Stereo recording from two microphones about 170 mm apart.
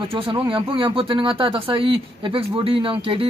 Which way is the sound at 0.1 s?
30° right (ahead or behind).